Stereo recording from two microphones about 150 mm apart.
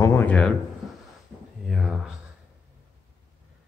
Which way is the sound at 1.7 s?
5° right (ahead or behind).